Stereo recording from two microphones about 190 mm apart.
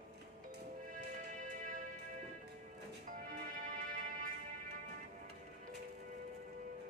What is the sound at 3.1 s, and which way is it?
Music, 45° right (ahead or behind).